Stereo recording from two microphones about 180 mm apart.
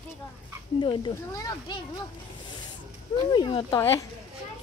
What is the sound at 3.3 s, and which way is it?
Speech, 25° left (ahead or behind).